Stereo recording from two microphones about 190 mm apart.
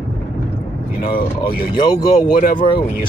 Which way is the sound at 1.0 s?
50° left (ahead or behind).